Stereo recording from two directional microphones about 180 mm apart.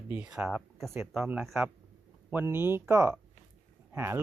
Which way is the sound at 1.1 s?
10° right (ahead or behind).